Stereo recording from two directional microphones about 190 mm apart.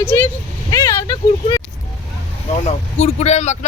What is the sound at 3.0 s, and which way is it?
Speech, 35° left (ahead or behind).